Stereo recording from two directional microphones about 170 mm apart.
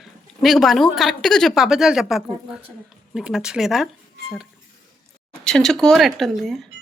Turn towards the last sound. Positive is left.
turn(degrees=0)  # may be behind; listen again after turning